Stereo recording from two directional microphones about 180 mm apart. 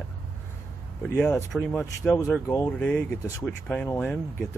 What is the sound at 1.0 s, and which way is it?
Speech, 5° left (ahead or behind).